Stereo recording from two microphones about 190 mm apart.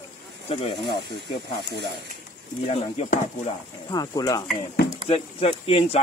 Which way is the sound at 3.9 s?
20° left (ahead or behind).